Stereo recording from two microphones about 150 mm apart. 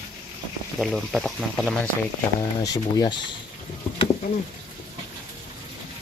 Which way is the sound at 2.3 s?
25° left (ahead or behind).